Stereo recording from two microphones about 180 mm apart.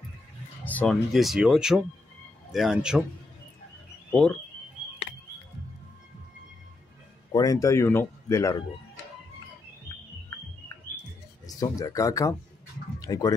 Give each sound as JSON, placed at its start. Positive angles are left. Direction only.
{"t": 0.7, "sound": "speech", "side_deg": 5}
{"t": 7.3, "sound": "speech", "side_deg": 20}
{"t": 11.4, "sound": "speech", "side_deg": 20}